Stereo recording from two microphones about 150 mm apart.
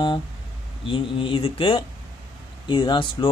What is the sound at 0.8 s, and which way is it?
Speech, 35° left (ahead or behind).